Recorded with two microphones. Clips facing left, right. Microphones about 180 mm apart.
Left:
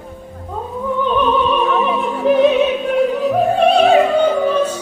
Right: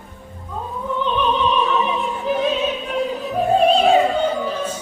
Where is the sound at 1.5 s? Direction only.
55° left (ahead or behind).